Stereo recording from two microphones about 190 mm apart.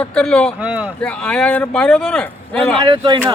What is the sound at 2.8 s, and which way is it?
Speech, 25° right (ahead or behind).